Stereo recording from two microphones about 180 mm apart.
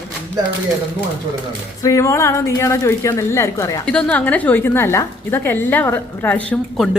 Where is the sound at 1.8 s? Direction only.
15° left (ahead or behind).